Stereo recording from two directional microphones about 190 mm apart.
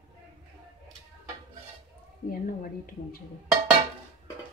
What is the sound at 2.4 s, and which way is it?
Speech, 50° left (ahead or behind).